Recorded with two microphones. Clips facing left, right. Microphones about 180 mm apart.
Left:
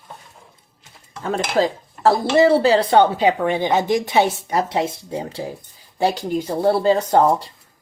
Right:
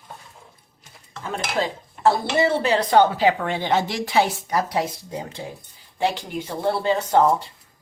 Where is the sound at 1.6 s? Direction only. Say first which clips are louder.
Left 3 dB; 35° left (ahead or behind).